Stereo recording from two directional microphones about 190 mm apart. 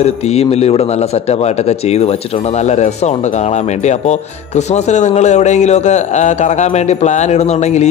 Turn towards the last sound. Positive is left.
turn(degrees=35)  # may be behind; listen again after turning